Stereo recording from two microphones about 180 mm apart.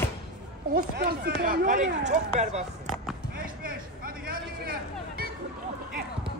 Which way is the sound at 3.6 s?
55° right (ahead or behind).